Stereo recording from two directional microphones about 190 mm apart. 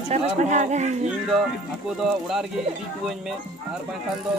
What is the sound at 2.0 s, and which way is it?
Speech, centre (ahead or behind).